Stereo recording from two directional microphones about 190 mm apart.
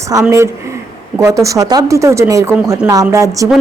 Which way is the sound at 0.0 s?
15° right (ahead or behind).